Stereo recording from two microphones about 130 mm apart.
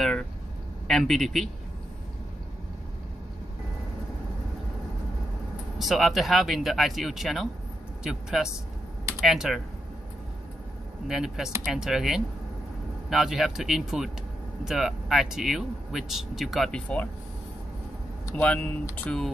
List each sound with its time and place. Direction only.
0.8 s speech: centre (ahead or behind)
5.8 s speech: centre (ahead or behind)
11.1 s speech: 5° right (ahead or behind)
18.3 s speech: 10° left (ahead or behind)